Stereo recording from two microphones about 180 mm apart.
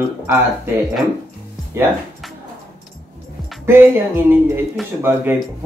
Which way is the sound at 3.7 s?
10° right (ahead or behind).